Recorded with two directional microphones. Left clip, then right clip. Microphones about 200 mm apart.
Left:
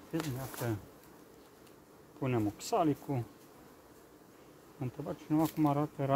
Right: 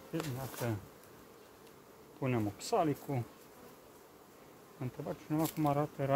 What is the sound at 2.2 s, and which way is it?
Speech, 20° left (ahead or behind).